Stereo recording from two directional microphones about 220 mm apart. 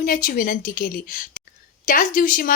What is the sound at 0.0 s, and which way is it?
A woman's voice, 40° left (ahead or behind).